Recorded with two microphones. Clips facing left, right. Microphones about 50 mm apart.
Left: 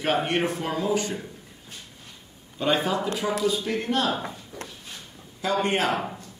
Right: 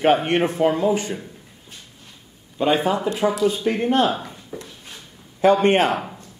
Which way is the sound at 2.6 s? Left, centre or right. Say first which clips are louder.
Right 5 dB; centre.